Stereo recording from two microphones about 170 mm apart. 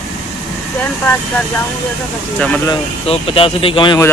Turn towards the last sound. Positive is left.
turn(degrees=30)  # may be behind; listen again after turning